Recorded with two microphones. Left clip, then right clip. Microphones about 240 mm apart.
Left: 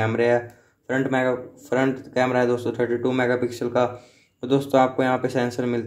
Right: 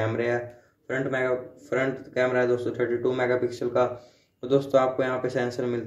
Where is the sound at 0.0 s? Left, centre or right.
Left.